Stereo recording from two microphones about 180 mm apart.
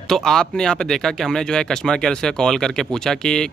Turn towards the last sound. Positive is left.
turn(degrees=5)  # may be behind; listen again after turning